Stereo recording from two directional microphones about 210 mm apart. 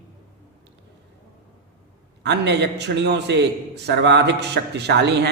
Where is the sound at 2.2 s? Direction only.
55° right (ahead or behind).